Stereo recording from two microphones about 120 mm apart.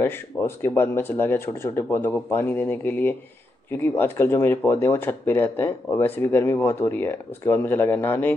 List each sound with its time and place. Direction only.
0.0 s speech: 20° left (ahead or behind)